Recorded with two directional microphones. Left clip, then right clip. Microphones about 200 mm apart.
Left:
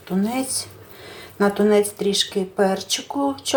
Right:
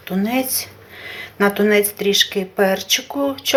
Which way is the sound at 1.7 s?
Centre (ahead or behind).